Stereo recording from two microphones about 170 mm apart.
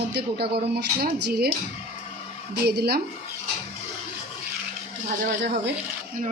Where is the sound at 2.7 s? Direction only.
70° right (ahead or behind).